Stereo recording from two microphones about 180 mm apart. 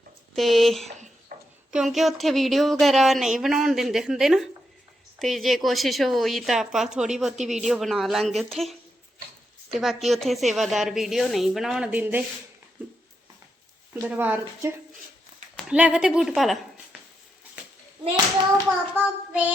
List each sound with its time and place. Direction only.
0.3 s speech: centre (ahead or behind)
1.3 s a sound: 50° right (ahead or behind)
1.7 s speech: centre (ahead or behind)
9.7 s speech: centre (ahead or behind)
14.2 s a child's voice: 10° right (ahead or behind)
18.5 s a child's voice: 10° right (ahead or behind)